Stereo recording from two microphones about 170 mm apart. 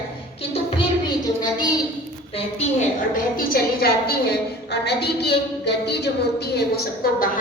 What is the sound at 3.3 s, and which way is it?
A woman's voice, 60° left (ahead or behind).